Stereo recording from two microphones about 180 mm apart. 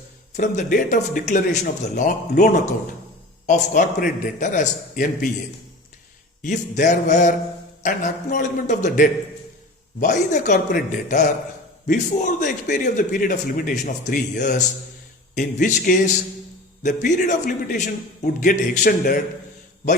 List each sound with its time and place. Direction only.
0.3 s a man's voice: 50° left (ahead or behind)
6.4 s a man's voice: 45° left (ahead or behind)